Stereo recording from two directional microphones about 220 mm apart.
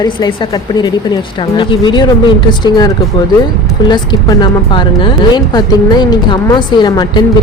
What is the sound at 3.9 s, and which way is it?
A woman's voice, 20° left (ahead or behind).